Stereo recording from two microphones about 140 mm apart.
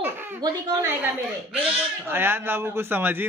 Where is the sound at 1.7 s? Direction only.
10° right (ahead or behind).